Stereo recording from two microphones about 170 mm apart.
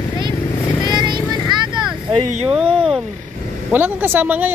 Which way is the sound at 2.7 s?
Centre (ahead or behind).